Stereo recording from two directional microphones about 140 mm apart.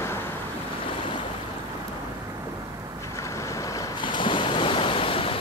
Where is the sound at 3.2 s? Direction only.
20° left (ahead or behind).